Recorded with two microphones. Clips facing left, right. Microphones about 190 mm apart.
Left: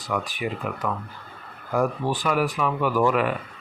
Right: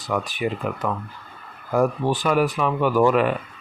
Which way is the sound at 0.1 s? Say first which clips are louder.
Right 3 dB; 30° right (ahead or behind).